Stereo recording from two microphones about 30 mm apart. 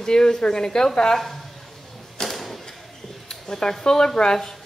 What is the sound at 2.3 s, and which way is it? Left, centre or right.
Mechanisms, centre.